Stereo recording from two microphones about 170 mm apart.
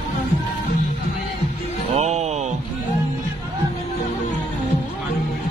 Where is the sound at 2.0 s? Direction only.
40° right (ahead or behind).